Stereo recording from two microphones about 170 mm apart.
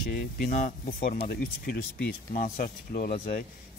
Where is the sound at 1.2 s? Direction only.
65° left (ahead or behind).